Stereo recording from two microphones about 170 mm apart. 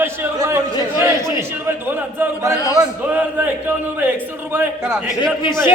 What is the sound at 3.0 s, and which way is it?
Chant, 10° right (ahead or behind).